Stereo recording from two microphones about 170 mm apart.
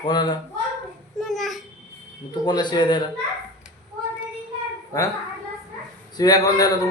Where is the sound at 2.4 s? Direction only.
25° left (ahead or behind).